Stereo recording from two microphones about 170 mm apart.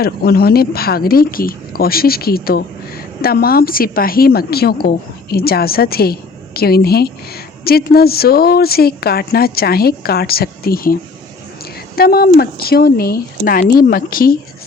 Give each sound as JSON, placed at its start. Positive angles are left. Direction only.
{"t": 0.0, "sound": "a woman's voice", "side_deg": 65}
{"t": 11.9, "sound": "a woman's voice", "side_deg": 60}